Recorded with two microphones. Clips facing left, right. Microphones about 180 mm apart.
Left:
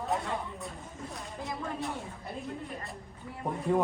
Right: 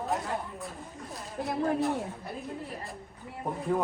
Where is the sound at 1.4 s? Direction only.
60° right (ahead or behind).